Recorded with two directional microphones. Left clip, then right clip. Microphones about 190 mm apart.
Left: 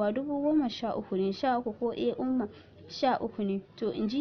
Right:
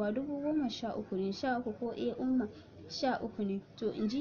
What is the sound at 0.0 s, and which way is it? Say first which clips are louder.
Speech: left 6 dB; 40° left (ahead or behind).